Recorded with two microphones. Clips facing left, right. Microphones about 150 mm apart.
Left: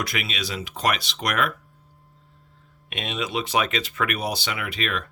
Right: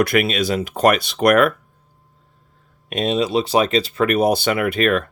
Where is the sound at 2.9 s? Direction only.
35° right (ahead or behind).